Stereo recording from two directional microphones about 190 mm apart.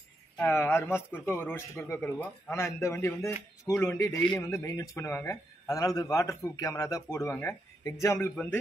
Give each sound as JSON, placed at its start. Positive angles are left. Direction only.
{"t": 0.4, "sound": "a man's voice", "side_deg": 10}